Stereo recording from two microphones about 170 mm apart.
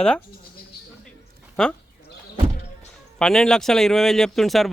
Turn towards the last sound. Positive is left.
turn(degrees=0)  # may be behind; listen again after turning